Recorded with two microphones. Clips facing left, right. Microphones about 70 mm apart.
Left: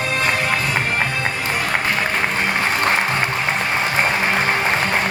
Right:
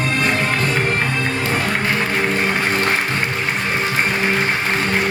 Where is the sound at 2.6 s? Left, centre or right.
Left.